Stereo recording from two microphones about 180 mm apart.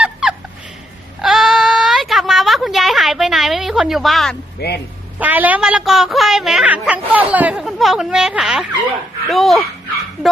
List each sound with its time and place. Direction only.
0.0 s fowl: 5° right (ahead or behind)
1.2 s a sound: centre (ahead or behind)
4.6 s speech: 65° left (ahead or behind)
5.2 s a woman's voice: 10° right (ahead or behind)